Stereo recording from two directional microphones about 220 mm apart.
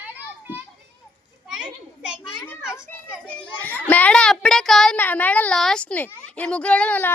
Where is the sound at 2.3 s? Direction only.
15° left (ahead or behind).